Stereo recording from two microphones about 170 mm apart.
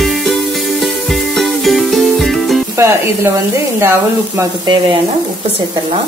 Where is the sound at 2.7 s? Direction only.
15° right (ahead or behind).